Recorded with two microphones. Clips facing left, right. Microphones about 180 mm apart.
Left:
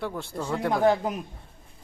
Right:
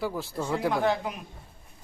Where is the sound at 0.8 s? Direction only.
45° left (ahead or behind).